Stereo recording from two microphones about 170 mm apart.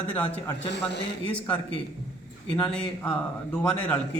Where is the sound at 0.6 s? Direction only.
90° left.